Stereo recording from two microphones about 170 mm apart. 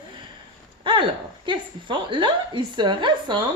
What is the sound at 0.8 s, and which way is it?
A woman's voice, 30° right (ahead or behind).